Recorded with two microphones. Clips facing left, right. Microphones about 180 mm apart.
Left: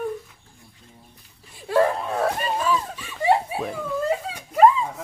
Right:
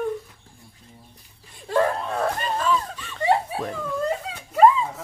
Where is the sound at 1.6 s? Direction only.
5° left (ahead or behind).